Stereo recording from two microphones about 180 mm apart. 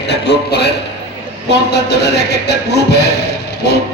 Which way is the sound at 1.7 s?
65° left (ahead or behind).